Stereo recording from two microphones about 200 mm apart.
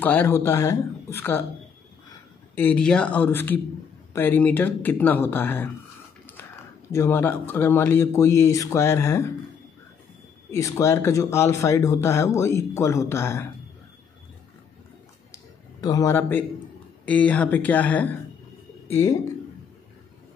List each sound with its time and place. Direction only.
0.0 s speech: 10° left (ahead or behind)
2.5 s speech: 5° left (ahead or behind)
6.9 s speech: 10° left (ahead or behind)
10.5 s speech: 15° left (ahead or behind)
15.3 s a sound: 15° left (ahead or behind)
17.0 s speech: 5° left (ahead or behind)